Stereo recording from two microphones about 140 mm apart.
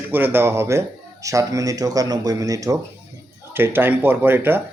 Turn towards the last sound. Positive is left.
turn(degrees=-15)  # may be behind; listen again after turning